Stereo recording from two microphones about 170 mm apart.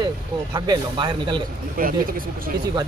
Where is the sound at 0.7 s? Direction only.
25° right (ahead or behind).